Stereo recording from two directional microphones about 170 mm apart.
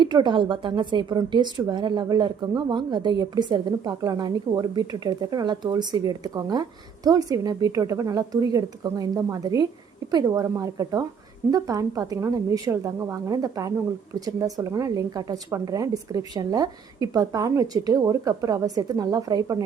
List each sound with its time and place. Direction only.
0.0 s a woman's voice: 25° right (ahead or behind)